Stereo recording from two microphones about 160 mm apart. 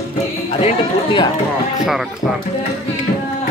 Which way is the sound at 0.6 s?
30° left (ahead or behind).